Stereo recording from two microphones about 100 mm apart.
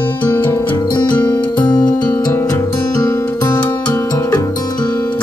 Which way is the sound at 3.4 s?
40° left (ahead or behind).